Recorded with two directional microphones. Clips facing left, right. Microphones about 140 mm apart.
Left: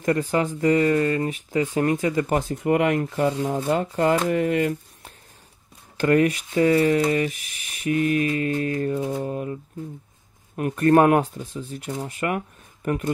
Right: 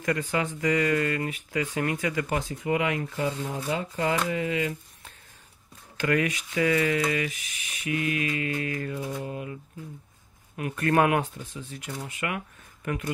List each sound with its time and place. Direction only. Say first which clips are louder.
0.0 s speech: left 6 dB; 35° left (ahead or behind)
2.2 s speech: left 6 dB; 45° left (ahead or behind)
3.9 s speech: left 6 dB; 40° left (ahead or behind)
5.9 s speech: left 7 dB; 35° left (ahead or behind)